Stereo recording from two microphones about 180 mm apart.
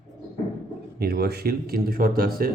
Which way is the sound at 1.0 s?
60° right (ahead or behind).